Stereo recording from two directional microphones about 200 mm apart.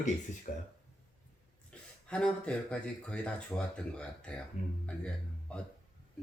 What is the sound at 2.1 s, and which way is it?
Speech, 5° left (ahead or behind).